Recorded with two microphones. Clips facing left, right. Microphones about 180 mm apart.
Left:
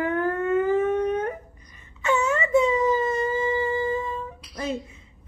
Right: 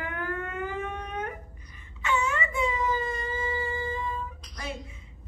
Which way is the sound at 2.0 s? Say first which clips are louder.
Left 6 dB; 40° left (ahead or behind).